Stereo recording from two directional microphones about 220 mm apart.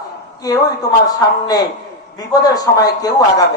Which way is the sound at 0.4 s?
15° left (ahead or behind).